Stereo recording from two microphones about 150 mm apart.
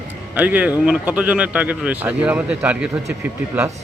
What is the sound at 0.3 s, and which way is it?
Speech, 10° right (ahead or behind).